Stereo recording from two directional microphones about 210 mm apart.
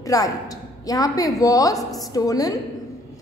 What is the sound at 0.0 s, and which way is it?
A woman's voice, 15° left (ahead or behind).